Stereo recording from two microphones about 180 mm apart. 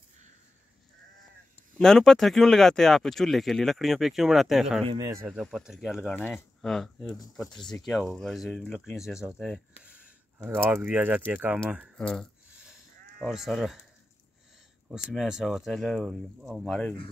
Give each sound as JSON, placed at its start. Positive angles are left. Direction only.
{"t": 1.8, "sound": "speech", "side_deg": 5}
{"t": 4.9, "sound": "speech", "side_deg": -15}
{"t": 5.4, "sound": "speech", "side_deg": 0}
{"t": 12.0, "sound": "speech", "side_deg": 5}
{"t": 15.0, "sound": "speech", "side_deg": -5}